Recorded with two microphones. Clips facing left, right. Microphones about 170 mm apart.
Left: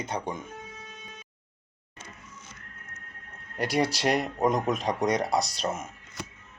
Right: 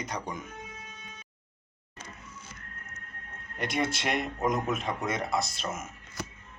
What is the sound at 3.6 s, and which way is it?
Speech, 35° left (ahead or behind).